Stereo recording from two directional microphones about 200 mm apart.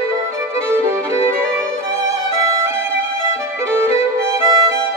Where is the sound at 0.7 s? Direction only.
10° right (ahead or behind).